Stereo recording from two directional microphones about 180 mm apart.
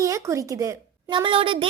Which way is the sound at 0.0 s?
20° right (ahead or behind).